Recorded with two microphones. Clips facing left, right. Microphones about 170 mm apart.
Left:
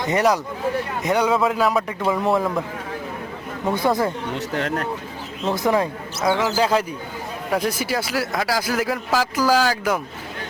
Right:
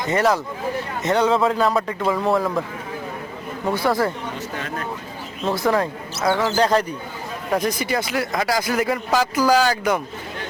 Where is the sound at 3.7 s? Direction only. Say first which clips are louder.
Even; 20° left (ahead or behind).